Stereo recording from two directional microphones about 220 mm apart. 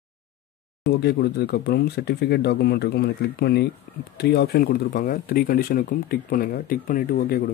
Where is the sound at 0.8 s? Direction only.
45° left (ahead or behind).